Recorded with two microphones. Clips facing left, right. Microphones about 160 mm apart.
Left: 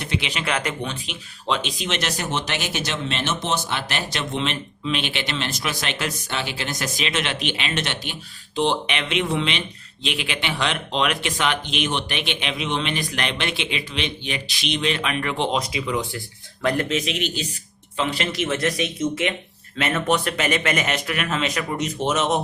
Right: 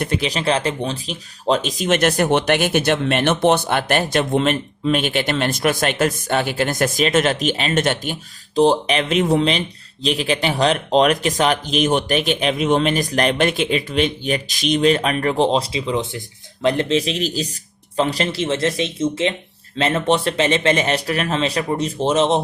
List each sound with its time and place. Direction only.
0.0 s a man's voice: 45° right (ahead or behind)